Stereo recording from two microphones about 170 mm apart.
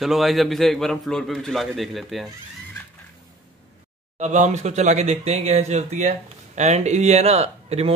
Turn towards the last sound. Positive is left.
turn(degrees=-40)  # may be behind; listen again after turning